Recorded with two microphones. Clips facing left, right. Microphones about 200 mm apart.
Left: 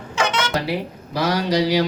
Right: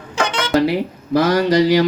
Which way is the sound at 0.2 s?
30° right (ahead or behind).